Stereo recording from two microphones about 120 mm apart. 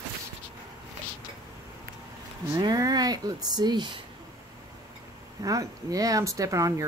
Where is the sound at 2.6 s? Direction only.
35° right (ahead or behind).